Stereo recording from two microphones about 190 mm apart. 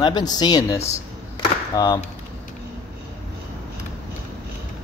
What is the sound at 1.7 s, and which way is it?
Speech, 20° left (ahead or behind).